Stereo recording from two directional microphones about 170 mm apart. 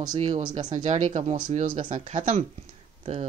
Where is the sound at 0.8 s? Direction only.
40° right (ahead or behind).